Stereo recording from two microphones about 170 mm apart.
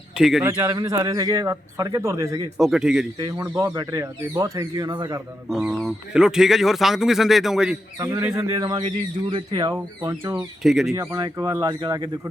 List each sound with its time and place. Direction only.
0.2 s speech: 5° right (ahead or behind)
0.4 s a man's voice: 20° right (ahead or behind)
2.6 s speech: centre (ahead or behind)
3.2 s a man's voice: 25° right (ahead or behind)
3.4 s speech: 15° right (ahead or behind)
5.5 s speech: centre (ahead or behind)
7.9 s a man's voice: 20° right (ahead or behind)
10.3 s speech: centre (ahead or behind)
10.9 s a man's voice: 20° right (ahead or behind)